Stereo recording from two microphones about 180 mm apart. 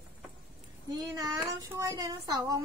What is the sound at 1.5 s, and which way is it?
Speech, 20° right (ahead or behind).